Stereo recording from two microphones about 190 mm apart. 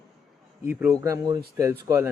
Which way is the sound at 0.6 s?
10° right (ahead or behind).